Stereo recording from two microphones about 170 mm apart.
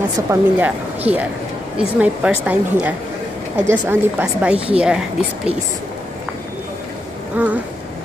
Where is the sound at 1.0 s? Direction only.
10° right (ahead or behind).